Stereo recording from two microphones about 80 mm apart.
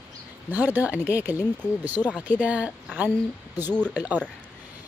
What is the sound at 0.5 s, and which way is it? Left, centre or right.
Speech, right.